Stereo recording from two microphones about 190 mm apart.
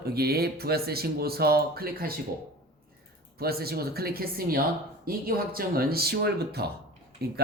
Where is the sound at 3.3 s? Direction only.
55° right (ahead or behind).